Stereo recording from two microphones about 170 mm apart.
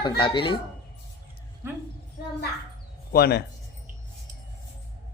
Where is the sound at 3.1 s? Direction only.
70° left (ahead or behind).